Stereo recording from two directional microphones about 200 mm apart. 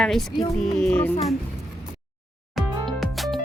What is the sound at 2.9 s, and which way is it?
Music, centre (ahead or behind).